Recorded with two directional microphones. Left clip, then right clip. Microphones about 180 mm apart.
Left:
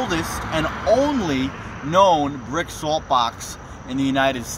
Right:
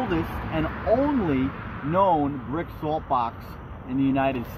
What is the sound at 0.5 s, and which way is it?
Speech, 35° left (ahead or behind).